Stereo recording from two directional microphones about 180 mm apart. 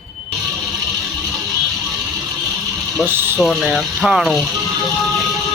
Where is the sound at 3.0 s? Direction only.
10° right (ahead or behind).